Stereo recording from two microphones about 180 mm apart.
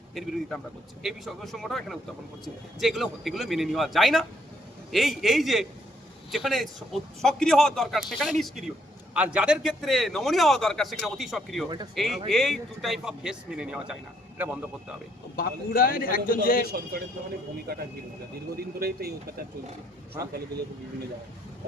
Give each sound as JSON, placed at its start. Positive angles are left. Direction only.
{"t": 0.1, "sound": "a man's voice", "side_deg": 0}
{"t": 15.4, "sound": "a man's voice", "side_deg": 55}
{"t": 18.5, "sound": "speech", "side_deg": -55}